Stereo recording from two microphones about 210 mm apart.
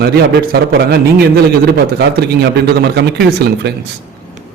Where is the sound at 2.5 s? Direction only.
50° right (ahead or behind).